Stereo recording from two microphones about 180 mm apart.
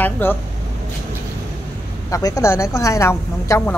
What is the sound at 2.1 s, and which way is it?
A woman's voice, 20° left (ahead or behind).